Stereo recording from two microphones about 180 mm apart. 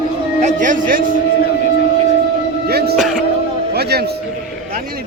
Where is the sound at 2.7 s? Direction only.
60° right (ahead or behind).